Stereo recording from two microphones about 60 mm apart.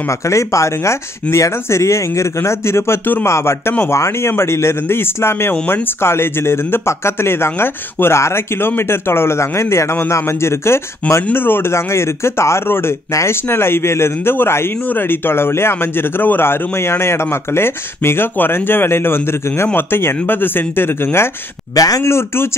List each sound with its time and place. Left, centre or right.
0.3 s speech: left
11.3 s speech: left
21.7 s speech: left
22.0 s speech: left